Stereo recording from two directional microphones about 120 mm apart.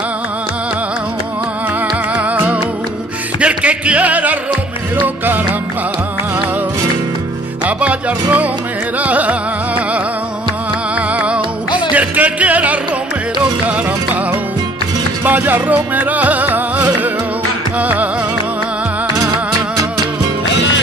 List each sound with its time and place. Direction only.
2.1 s music: 10° right (ahead or behind)
7.6 s music: 10° right (ahead or behind)
15.2 s music: 15° right (ahead or behind)